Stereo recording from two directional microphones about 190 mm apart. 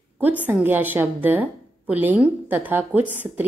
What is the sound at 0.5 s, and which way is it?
A woman's voice, 10° right (ahead or behind).